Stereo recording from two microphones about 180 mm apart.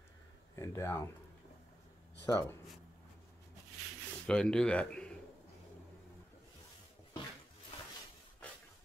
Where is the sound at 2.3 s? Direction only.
20° left (ahead or behind).